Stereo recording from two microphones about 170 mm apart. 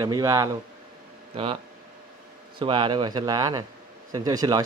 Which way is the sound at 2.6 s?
30° right (ahead or behind).